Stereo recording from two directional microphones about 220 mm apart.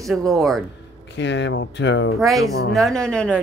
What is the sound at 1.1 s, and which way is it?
Speech, 55° left (ahead or behind).